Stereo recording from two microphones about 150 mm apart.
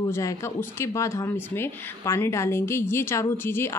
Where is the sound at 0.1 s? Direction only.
20° left (ahead or behind).